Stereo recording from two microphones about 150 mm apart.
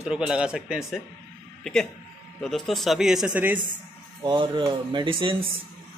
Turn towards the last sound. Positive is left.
turn(degrees=-35)  # may be behind; listen again after turning